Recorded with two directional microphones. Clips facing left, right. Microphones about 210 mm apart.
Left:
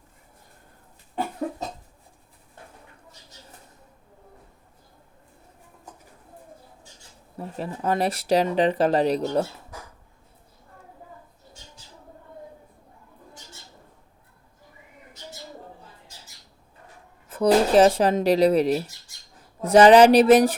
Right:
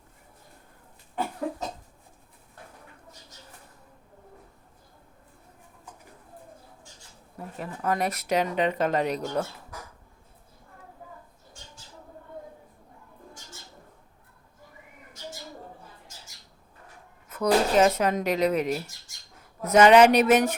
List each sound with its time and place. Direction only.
7.3 s speech: 30° left (ahead or behind)
17.2 s a woman's voice: 30° left (ahead or behind)